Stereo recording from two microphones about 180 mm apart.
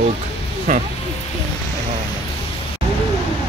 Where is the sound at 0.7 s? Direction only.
45° right (ahead or behind).